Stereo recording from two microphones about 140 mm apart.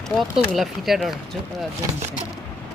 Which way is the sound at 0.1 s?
Centre (ahead or behind).